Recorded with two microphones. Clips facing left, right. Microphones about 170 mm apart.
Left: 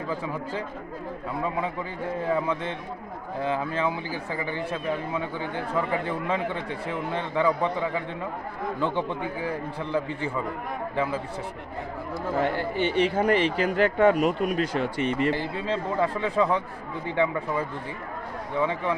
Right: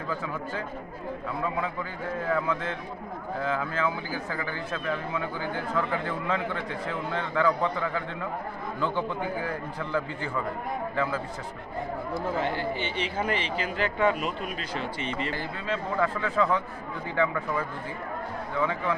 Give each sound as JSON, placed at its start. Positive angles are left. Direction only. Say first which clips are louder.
{"t": 1.4, "sound": "a man's voice", "louder": "left 2 dB", "side_deg": 25}
{"t": 9.4, "sound": "a man's voice", "louder": "left 2 dB", "side_deg": 25}
{"t": 12.4, "sound": "speech", "louder": "left 8 dB", "side_deg": 50}
{"t": 15.3, "sound": "a man's voice", "louder": "left 3 dB", "side_deg": 30}
{"t": 18.6, "sound": "a man's voice", "louder": "left 2 dB", "side_deg": 25}